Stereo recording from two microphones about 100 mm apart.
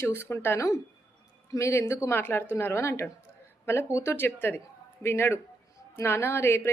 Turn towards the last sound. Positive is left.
turn(degrees=25)  # may be behind; listen again after turning